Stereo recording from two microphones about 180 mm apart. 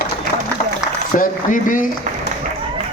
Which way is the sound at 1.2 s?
50° left (ahead or behind).